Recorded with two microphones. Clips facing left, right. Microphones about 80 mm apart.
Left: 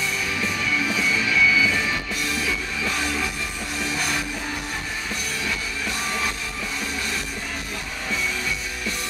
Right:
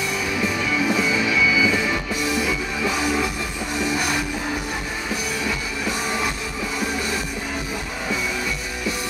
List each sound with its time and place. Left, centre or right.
0.4 s music: centre